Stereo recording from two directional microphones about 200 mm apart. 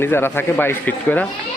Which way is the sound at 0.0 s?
10° left (ahead or behind).